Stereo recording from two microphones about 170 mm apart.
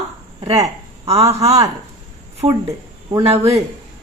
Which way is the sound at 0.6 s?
35° right (ahead or behind).